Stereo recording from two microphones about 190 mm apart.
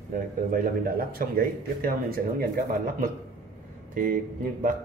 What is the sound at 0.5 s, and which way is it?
Speech, 50° right (ahead or behind).